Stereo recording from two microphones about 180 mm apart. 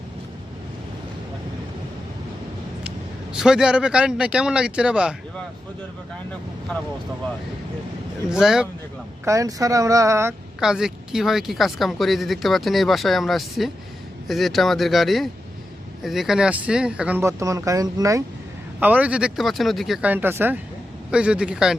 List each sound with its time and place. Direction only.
3.3 s speech: 5° right (ahead or behind)
8.3 s speech: 5° right (ahead or behind)
9.2 s speech: 15° right (ahead or behind)
10.6 s speech: 5° right (ahead or behind); by 18.2 s 20° right (ahead or behind)
18.8 s speech: 10° right (ahead or behind)